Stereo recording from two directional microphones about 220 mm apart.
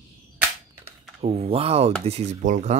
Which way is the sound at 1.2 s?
25° right (ahead or behind).